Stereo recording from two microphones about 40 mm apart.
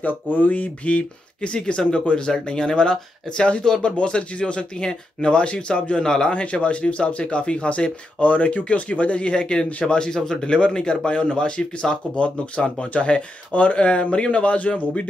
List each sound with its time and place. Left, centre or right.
0.0 s speech: left
1.9 s speech: left
6.3 s speech: left